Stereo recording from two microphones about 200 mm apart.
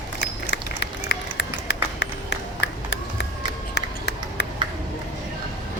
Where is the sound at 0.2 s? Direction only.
60° left (ahead or behind).